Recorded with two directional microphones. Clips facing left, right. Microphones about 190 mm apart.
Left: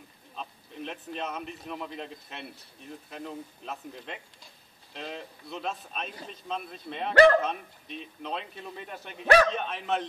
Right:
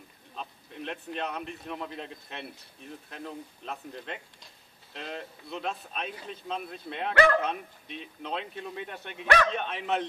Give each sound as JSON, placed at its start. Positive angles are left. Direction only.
{"t": 0.4, "sound": "speech", "side_deg": 0}
{"t": 9.2, "sound": "speech", "side_deg": 40}
{"t": 9.5, "sound": "speech", "side_deg": 0}